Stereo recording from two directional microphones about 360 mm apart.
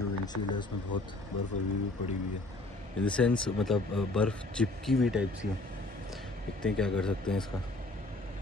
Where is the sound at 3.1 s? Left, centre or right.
Centre.